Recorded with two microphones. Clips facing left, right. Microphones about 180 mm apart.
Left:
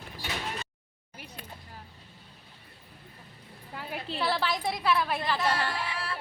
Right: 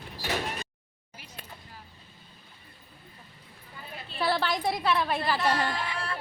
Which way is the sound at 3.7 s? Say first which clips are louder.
Left 7 dB; 85° left.